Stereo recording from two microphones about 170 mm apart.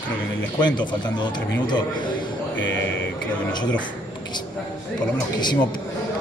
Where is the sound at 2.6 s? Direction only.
90° left.